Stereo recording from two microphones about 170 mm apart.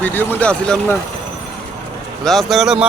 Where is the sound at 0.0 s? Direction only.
10° left (ahead or behind).